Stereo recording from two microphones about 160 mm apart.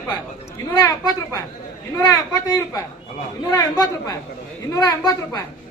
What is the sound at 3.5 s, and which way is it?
Speech, 20° left (ahead or behind).